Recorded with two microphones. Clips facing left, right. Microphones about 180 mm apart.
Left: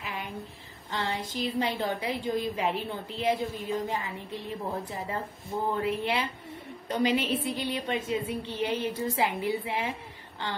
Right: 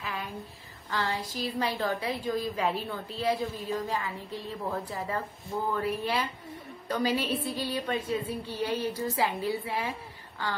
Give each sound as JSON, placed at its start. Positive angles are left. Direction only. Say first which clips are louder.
{"t": 0.8, "sound": "a woman's voice", "louder": "right 1 dB", "side_deg": 25}